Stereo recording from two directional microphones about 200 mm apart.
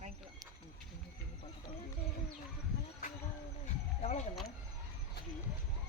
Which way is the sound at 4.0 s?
35° left (ahead or behind).